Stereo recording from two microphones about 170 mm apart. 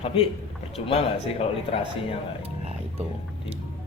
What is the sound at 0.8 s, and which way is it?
A man's voice, 35° left (ahead or behind).